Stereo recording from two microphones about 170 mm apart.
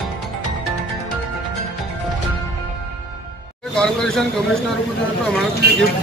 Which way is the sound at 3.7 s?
5° left (ahead or behind).